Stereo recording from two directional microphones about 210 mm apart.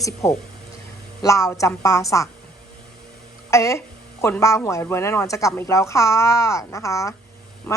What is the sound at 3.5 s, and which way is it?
A woman's voice, 15° left (ahead or behind).